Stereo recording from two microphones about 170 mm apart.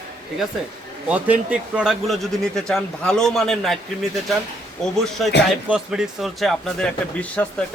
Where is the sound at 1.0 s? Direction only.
10° right (ahead or behind).